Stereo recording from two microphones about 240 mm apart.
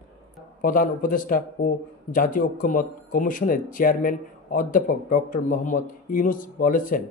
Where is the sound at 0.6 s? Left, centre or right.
Left.